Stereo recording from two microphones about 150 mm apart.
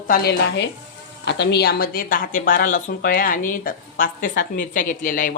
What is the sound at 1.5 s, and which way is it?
Speech, 90° left.